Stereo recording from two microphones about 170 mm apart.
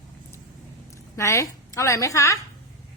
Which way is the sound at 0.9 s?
15° left (ahead or behind).